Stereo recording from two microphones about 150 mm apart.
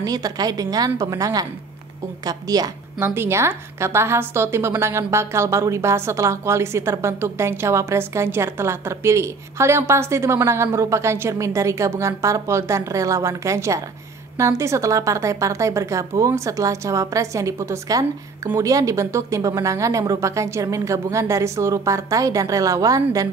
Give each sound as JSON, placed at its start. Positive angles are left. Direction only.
{"t": 0.0, "sound": "a woman's voice", "side_deg": -25}